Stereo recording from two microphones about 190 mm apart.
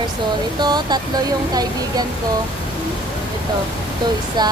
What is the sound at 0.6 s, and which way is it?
Speech, 20° right (ahead or behind).